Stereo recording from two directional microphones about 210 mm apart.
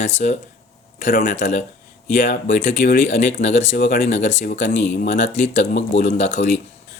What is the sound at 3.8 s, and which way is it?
Speech, 45° left (ahead or behind).